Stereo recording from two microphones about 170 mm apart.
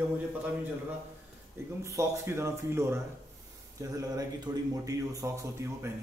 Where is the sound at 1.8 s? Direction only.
15° right (ahead or behind).